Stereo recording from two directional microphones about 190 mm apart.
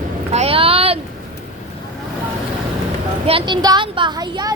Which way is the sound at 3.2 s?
25° right (ahead or behind).